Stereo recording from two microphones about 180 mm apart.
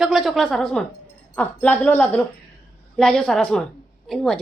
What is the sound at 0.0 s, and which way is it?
A woman's voice, centre (ahead or behind).